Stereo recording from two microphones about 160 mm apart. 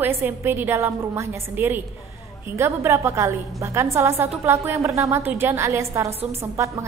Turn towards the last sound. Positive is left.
turn(degrees=-15)  # may be behind; listen again after turning